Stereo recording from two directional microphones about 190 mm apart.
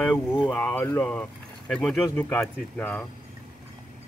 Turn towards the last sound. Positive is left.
turn(degrees=10)  # may be behind; listen again after turning